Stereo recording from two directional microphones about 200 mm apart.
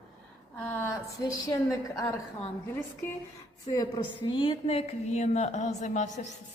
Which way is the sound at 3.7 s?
20° left (ahead or behind).